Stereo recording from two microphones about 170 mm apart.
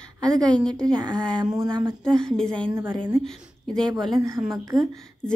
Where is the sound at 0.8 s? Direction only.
25° right (ahead or behind).